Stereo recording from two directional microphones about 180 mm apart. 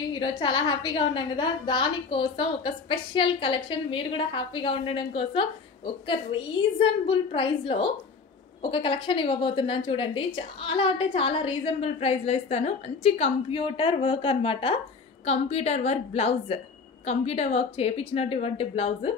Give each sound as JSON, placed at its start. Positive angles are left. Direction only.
{"t": 0.1, "sound": "a woman's voice", "side_deg": 25}